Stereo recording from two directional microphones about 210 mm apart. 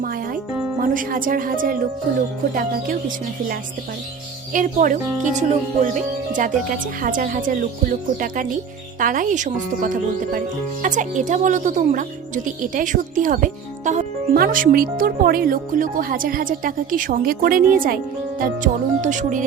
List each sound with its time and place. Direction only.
0.8 s a woman's voice: 40° right (ahead or behind)
4.5 s a woman's voice: 40° right (ahead or behind)